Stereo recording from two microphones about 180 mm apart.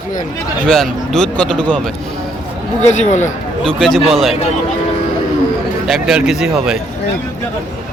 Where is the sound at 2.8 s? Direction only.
40° left (ahead or behind).